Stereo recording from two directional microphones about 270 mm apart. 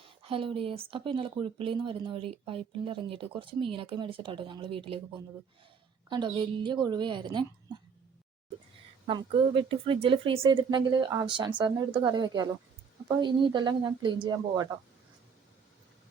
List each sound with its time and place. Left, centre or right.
0.0 s speech: centre
6.1 s speech: centre
9.0 s speech: centre